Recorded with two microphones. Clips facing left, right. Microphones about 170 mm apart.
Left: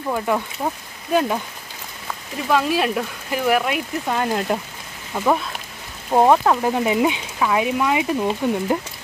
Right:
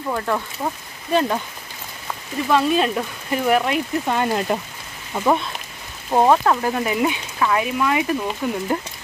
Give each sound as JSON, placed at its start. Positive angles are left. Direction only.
{"t": 0.1, "sound": "speech", "side_deg": 10}
{"t": 2.5, "sound": "speech", "side_deg": 5}